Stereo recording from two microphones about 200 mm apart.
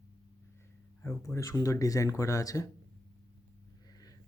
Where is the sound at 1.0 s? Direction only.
15° left (ahead or behind).